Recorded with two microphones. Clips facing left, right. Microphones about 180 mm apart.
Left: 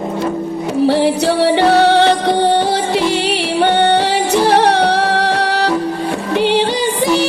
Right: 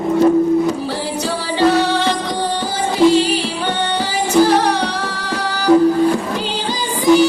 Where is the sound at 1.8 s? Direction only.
65° left (ahead or behind).